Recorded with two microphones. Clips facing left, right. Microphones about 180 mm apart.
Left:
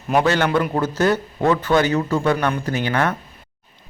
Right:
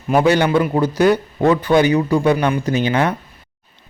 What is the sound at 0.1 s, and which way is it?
Speech, 10° right (ahead or behind).